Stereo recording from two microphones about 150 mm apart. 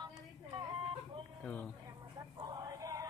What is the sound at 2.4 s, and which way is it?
Horse, 25° right (ahead or behind).